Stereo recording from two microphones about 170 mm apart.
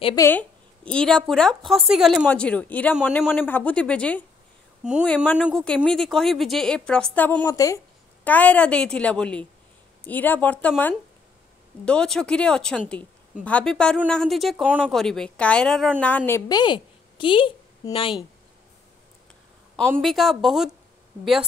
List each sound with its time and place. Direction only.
0.0 s a woman's voice: 20° left (ahead or behind)
0.3 s a woman's voice: 10° left (ahead or behind)
11.8 s a woman's voice: 5° left (ahead or behind); by 18.1 s 30° left (ahead or behind)
20.0 s a woman's voice: centre (ahead or behind)